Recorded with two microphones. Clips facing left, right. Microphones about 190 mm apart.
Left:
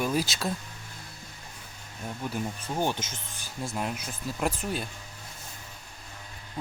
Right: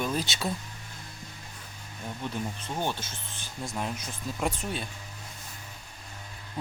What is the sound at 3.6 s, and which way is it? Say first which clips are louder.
Speech: left 1 dB; 5° left (ahead or behind).